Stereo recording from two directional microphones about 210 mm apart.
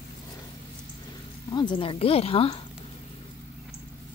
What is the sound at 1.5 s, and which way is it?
Speech, 20° left (ahead or behind).